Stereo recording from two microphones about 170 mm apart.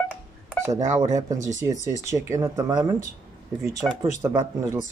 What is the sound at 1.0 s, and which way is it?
Speech, 20° right (ahead or behind).